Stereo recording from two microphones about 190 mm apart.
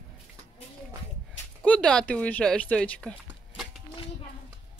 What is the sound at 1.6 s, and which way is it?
Speech, 5° left (ahead or behind).